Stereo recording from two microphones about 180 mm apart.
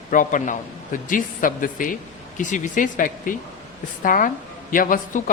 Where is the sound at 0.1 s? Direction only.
45° left (ahead or behind).